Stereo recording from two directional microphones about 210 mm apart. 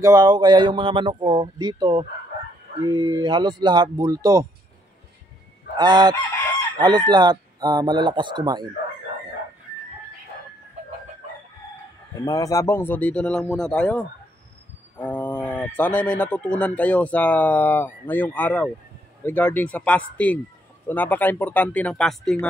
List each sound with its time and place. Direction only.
0.0 s speech: 15° right (ahead or behind)
5.8 s speech: 20° right (ahead or behind)
12.3 s speech: 15° left (ahead or behind)